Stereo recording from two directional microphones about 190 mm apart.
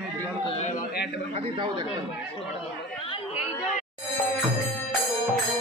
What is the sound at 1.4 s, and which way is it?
Speech, 25° right (ahead or behind).